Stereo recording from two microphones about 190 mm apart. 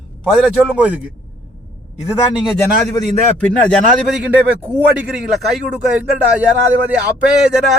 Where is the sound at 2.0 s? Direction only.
Centre (ahead or behind).